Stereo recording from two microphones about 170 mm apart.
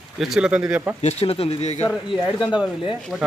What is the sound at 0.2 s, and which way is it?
Speech, 5° right (ahead or behind).